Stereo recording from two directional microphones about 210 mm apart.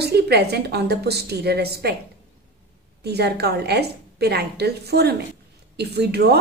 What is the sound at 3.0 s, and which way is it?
A woman's voice, 50° right (ahead or behind).